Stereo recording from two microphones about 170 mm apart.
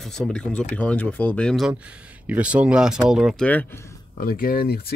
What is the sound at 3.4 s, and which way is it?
Speech, 10° left (ahead or behind).